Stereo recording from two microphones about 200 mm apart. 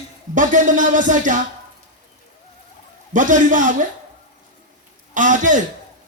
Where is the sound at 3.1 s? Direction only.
40° right (ahead or behind).